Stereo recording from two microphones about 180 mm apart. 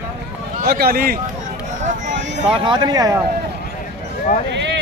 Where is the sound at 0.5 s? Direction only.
55° right (ahead or behind).